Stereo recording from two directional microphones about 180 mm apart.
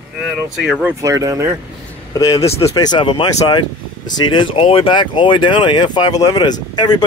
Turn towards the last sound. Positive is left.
turn(degrees=25)  # may be behind; listen again after turning